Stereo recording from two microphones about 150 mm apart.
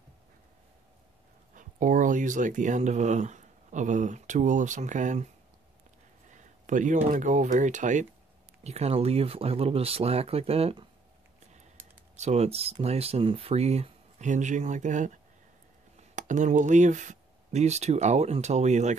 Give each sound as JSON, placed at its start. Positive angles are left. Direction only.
{"t": 1.5, "sound": "speech", "side_deg": -60}
{"t": 6.3, "sound": "speech", "side_deg": -55}
{"t": 8.6, "sound": "speech", "side_deg": -45}
{"t": 11.5, "sound": "computer keyboard", "side_deg": -65}
{"t": 12.2, "sound": "speech", "side_deg": -45}